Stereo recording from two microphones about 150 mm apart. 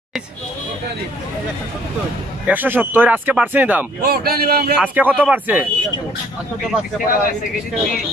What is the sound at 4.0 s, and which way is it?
Speech, 90° right.